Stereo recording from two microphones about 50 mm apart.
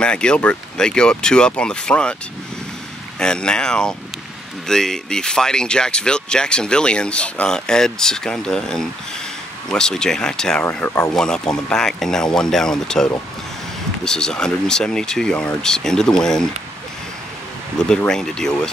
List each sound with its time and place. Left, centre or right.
0.0 s speech: centre
3.2 s speech: centre
17.7 s speech: centre